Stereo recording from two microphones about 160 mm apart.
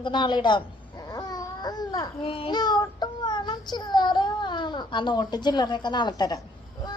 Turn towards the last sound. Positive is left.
turn(degrees=25)  # may be behind; listen again after turning